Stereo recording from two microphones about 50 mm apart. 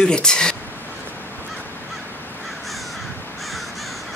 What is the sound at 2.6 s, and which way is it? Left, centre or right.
Crow, centre.